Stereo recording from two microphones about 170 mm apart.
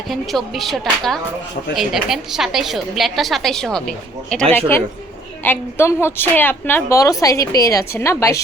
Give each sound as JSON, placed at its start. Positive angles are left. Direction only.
{"t": 0.1, "sound": "a woman's voice", "side_deg": 0}